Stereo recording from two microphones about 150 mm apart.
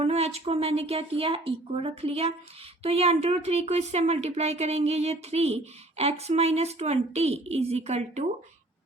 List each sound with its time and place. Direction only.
0.0 s speech: 45° right (ahead or behind)